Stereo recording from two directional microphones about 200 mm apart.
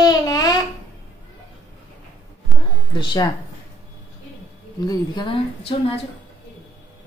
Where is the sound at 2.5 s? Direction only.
Centre (ahead or behind).